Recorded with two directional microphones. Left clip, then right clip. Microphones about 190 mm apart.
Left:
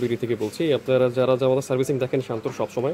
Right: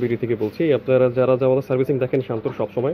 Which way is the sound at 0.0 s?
20° left (ahead or behind).